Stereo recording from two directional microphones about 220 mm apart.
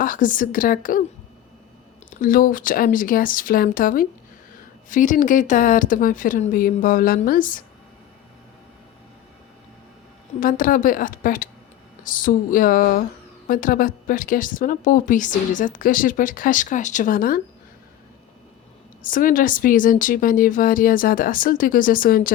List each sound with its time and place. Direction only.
0.0 s a woman's voice: 40° left (ahead or behind)
2.0 s a woman's voice: 40° left (ahead or behind)
10.4 s a woman's voice: 40° left (ahead or behind)
19.0 s a woman's voice: 40° left (ahead or behind)